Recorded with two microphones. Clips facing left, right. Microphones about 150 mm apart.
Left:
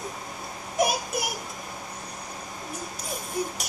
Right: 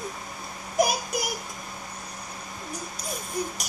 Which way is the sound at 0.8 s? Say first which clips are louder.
Right 1 dB; centre (ahead or behind).